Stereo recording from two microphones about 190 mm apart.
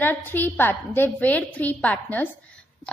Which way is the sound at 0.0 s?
10° left (ahead or behind).